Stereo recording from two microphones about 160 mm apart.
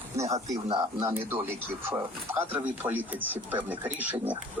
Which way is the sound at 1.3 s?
15° right (ahead or behind).